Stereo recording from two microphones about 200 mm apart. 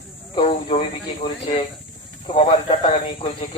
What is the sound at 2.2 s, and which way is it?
A man's voice, 25° left (ahead or behind).